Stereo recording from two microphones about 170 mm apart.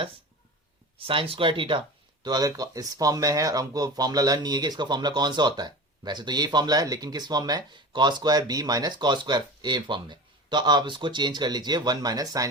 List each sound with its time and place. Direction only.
0.9 s speech: 30° right (ahead or behind)